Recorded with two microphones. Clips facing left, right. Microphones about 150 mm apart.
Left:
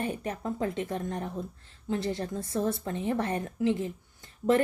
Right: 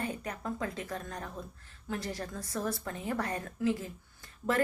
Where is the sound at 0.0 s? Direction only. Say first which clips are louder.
Left 4 dB; 25° left (ahead or behind).